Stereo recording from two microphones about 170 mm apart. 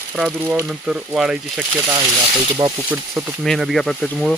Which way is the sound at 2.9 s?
10° right (ahead or behind).